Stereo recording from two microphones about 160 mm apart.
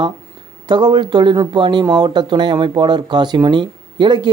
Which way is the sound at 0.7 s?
25° right (ahead or behind).